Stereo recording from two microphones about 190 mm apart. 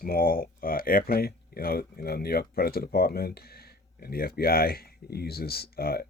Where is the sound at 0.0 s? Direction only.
50° left (ahead or behind).